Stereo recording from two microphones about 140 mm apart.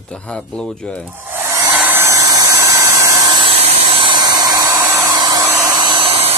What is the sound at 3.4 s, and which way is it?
Hair dryer, 45° right (ahead or behind).